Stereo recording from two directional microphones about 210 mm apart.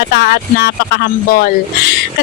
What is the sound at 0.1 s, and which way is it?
Speech, 50° left (ahead or behind).